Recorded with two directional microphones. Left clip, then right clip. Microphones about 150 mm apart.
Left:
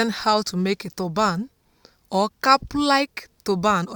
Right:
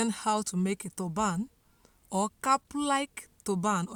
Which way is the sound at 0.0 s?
35° left (ahead or behind).